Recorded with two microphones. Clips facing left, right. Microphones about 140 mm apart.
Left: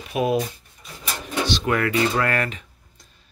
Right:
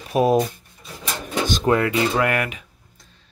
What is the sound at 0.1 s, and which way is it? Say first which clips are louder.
Speech: right 4 dB; 40° right (ahead or behind).